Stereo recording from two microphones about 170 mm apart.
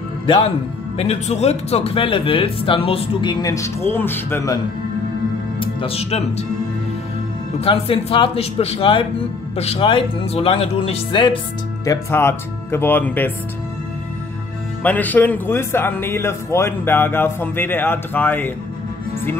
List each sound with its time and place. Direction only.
0.9 s speech: 40° left (ahead or behind); by 4.6 s 15° left (ahead or behind)
5.6 s speech: 35° left (ahead or behind)
7.6 s speech: 35° left (ahead or behind)
11.8 s a man's voice: 15° left (ahead or behind)
14.8 s a man's voice: 10° left (ahead or behind)